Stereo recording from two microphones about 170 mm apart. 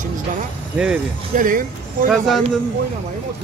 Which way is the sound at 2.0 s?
Centre (ahead or behind).